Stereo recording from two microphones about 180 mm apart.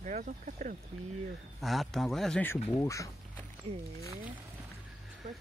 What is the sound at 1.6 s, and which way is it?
Speech, centre (ahead or behind).